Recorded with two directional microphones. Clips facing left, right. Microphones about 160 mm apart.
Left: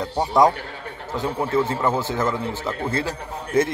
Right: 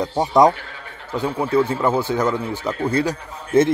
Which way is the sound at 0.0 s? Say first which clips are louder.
Right 3 dB; 20° right (ahead or behind).